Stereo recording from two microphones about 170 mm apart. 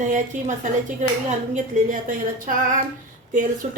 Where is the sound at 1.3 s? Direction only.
50° right (ahead or behind).